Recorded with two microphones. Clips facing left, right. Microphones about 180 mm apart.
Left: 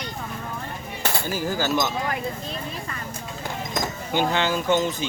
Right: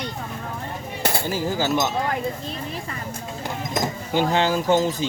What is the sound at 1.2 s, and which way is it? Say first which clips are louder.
Speech: right 1 dB; 25° right (ahead or behind).